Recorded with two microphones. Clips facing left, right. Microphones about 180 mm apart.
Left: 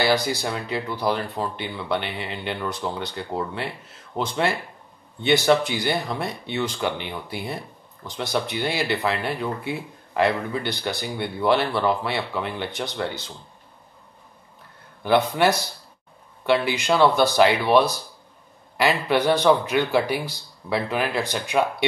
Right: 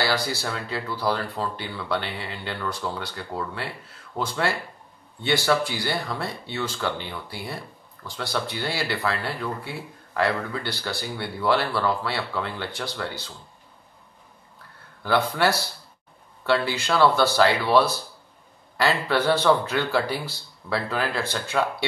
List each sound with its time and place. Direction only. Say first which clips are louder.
0.0 s speech: left 4 dB; 20° left (ahead or behind)
15.0 s speech: left 3 dB; 20° left (ahead or behind)